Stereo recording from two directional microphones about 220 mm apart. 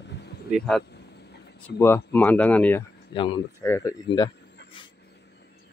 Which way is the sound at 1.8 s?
10° left (ahead or behind).